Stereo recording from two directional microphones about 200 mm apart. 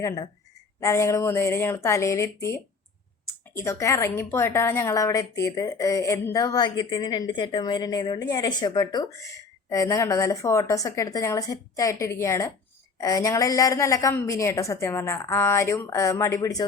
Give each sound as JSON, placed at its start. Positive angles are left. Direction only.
{"t": 0.8, "sound": "a woman's voice", "side_deg": 15}